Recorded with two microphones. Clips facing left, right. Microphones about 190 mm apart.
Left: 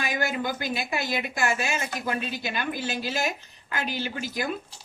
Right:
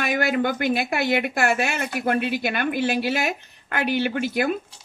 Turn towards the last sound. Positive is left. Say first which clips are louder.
# right 8 dB
turn(degrees=-60)  # may be behind; listen again after turning